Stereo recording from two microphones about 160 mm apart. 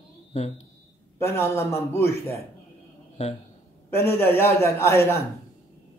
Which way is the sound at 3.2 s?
45° left (ahead or behind).